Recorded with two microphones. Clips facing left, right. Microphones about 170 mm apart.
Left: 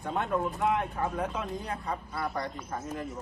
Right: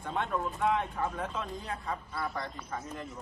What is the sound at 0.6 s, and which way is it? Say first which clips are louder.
Speech: left 1 dB; centre (ahead or behind).